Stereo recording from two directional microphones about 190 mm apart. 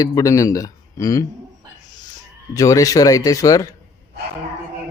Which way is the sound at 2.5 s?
15° left (ahead or behind).